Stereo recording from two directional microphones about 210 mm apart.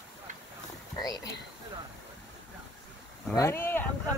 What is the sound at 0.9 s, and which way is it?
Speech, 20° left (ahead or behind).